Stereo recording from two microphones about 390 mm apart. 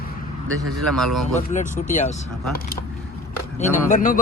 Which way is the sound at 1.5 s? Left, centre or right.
Centre.